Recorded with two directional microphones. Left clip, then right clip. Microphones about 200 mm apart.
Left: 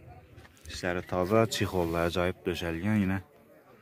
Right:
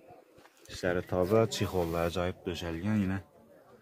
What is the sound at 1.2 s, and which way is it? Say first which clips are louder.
Speech: left 2 dB; 10° left (ahead or behind).